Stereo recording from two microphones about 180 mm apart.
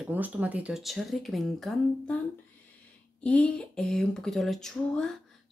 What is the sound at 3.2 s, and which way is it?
Speech, 5° left (ahead or behind).